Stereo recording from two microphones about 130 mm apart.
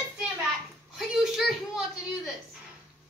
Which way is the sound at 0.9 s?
Centre (ahead or behind).